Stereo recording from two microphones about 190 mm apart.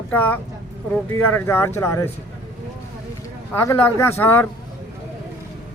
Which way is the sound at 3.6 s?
10° left (ahead or behind).